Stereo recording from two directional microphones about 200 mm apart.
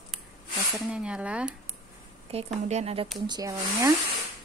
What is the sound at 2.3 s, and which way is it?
Speech, 30° right (ahead or behind).